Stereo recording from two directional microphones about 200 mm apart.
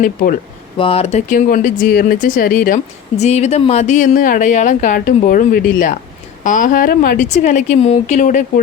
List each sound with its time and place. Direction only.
0.8 s speech: 30° left (ahead or behind)